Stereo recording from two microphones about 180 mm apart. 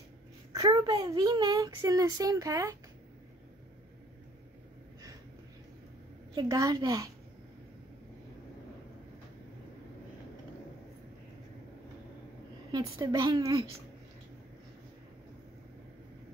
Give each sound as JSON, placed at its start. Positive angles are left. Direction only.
{"t": 0.5, "sound": "speech", "side_deg": -20}
{"t": 6.3, "sound": "a woman's voice", "side_deg": -20}
{"t": 12.7, "sound": "a woman's voice", "side_deg": -20}